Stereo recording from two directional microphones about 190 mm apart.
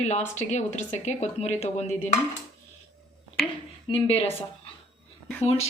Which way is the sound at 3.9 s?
25° left (ahead or behind).